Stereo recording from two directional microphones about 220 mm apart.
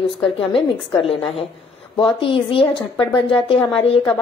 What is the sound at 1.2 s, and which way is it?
Speech, 25° left (ahead or behind).